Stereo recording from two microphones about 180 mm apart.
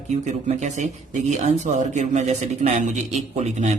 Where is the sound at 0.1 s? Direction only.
40° right (ahead or behind).